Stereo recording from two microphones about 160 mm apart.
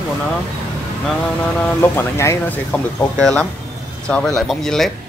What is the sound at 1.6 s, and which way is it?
Speech, 15° left (ahead or behind).